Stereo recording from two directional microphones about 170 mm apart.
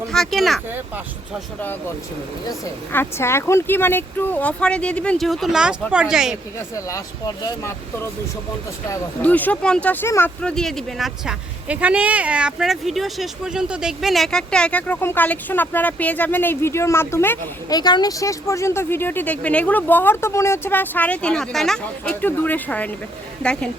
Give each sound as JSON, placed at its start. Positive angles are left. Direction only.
{"t": 0.1, "sound": "speech", "side_deg": 0}
{"t": 2.5, "sound": "speech", "side_deg": 15}
{"t": 6.7, "sound": "speech", "side_deg": 20}
{"t": 8.9, "sound": "speech", "side_deg": 10}